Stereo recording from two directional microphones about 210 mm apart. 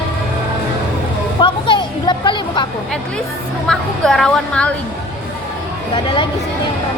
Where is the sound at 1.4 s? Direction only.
20° left (ahead or behind).